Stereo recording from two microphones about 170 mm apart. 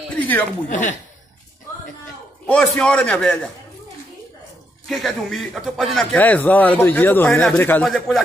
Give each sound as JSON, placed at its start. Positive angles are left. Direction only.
{"t": 0.2, "sound": "speech", "side_deg": 10}
{"t": 0.7, "sound": "speech", "side_deg": 50}
{"t": 2.4, "sound": "speech", "side_deg": 10}
{"t": 4.8, "sound": "a man's voice", "side_deg": 0}